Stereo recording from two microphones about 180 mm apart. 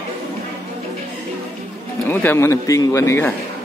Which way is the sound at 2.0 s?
10° left (ahead or behind).